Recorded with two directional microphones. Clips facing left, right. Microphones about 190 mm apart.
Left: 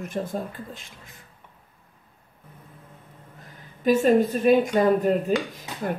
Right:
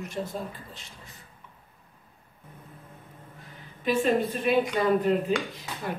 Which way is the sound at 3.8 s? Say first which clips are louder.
Left 6 dB; 45° left (ahead or behind).